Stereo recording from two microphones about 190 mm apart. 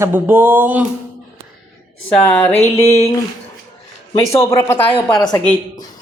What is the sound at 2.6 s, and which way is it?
Speech, 35° left (ahead or behind).